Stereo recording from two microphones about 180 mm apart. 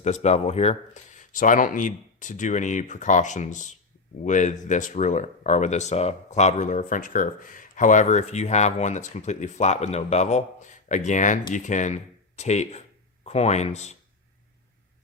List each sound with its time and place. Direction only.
0.0 s speech: 40° left (ahead or behind)